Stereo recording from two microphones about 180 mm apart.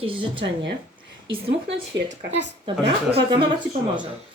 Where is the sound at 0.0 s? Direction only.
30° right (ahead or behind).